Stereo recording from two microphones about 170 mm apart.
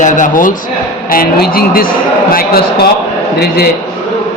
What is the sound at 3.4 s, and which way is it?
Speech, 70° left (ahead or behind).